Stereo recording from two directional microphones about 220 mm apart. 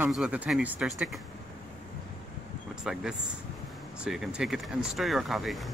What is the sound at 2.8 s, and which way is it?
Speech, 5° right (ahead or behind).